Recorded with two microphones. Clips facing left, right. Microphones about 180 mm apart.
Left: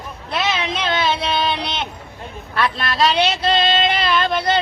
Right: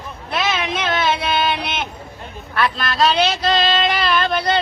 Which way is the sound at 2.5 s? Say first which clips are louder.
Right 1 dB; 25° left (ahead or behind).